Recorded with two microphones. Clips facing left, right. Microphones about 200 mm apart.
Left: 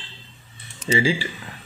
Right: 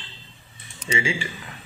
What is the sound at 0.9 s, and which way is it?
Speech, 35° left (ahead or behind).